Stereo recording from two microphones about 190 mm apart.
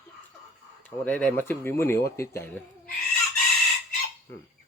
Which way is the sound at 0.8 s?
10° left (ahead or behind).